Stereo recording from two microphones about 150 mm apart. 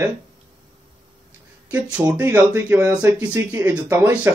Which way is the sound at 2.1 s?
10° right (ahead or behind).